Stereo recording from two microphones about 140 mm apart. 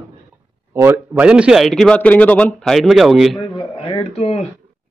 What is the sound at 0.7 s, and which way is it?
Speech, 15° right (ahead or behind).